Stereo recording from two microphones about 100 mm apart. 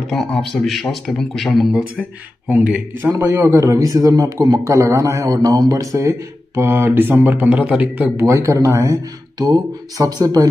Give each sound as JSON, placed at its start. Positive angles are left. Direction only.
{"t": 0.1, "sound": "speech", "side_deg": 5}
{"t": 2.5, "sound": "speech", "side_deg": -15}
{"t": 3.0, "sound": "a man's voice", "side_deg": -25}
{"t": 8.2, "sound": "a man's voice", "side_deg": -30}